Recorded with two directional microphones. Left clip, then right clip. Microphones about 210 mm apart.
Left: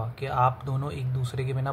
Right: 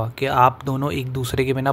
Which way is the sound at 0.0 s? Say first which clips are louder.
Right 8 dB; 35° right (ahead or behind).